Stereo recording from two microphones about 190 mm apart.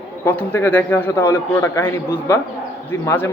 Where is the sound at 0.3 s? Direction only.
10° left (ahead or behind).